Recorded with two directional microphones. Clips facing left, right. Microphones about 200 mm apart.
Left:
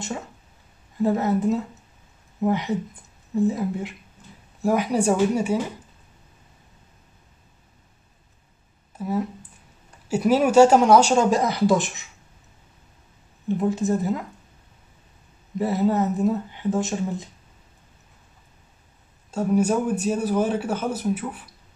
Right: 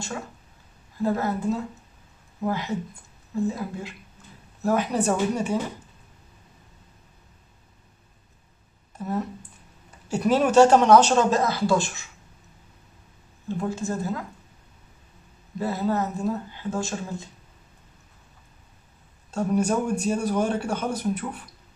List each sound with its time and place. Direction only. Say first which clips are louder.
1.0 s speech: left 4 dB; 20° left (ahead or behind)
4.2 s a sound: left 2 dB; 15° left (ahead or behind)
4.6 s speech: left 2 dB; 10° left (ahead or behind)
8.9 s speech: left 3 dB; 5° left (ahead or behind)
13.5 s speech: left 6 dB; 20° left (ahead or behind)
15.6 s speech: left 4 dB; 20° left (ahead or behind)
19.3 s speech: left 2 dB; 5° left (ahead or behind)